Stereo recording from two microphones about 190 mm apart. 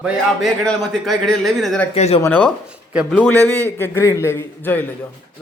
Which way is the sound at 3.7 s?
10° left (ahead or behind).